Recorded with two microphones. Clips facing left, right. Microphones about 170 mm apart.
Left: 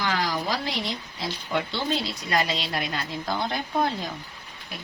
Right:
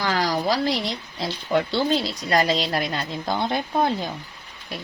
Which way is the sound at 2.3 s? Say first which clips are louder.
Right 5 dB; 40° right (ahead or behind).